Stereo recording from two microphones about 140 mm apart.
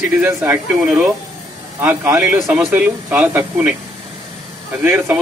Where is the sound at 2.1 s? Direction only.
5° right (ahead or behind).